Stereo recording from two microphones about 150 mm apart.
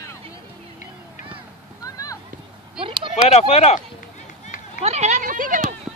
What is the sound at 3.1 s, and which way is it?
Speech, 45° left (ahead or behind).